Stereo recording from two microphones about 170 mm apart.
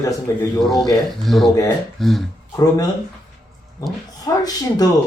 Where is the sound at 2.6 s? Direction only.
20° left (ahead or behind).